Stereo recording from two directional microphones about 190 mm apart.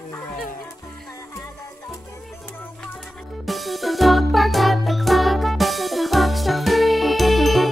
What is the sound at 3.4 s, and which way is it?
Music, centre (ahead or behind).